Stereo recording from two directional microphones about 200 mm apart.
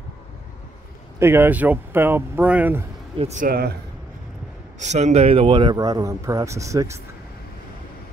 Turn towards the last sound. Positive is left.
turn(degrees=-15)  # may be behind; listen again after turning